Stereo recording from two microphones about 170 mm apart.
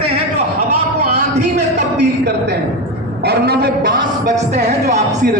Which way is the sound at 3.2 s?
70° right (ahead or behind).